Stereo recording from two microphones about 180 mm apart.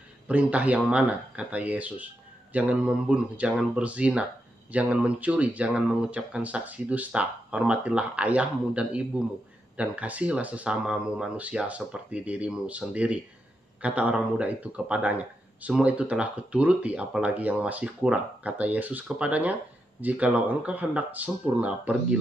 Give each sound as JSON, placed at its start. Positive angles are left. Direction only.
{"t": 0.3, "sound": "speech", "side_deg": -10}